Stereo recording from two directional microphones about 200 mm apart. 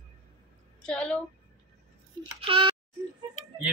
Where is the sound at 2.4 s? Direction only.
25° right (ahead or behind).